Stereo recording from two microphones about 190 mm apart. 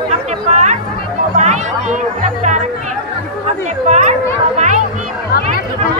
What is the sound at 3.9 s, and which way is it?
Speech, 40° right (ahead or behind).